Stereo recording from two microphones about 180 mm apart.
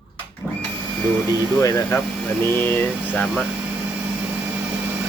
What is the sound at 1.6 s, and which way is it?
Speech, 15° left (ahead or behind).